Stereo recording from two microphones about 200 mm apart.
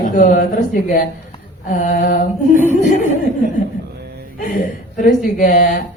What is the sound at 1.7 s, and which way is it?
Speech, 40° left (ahead or behind).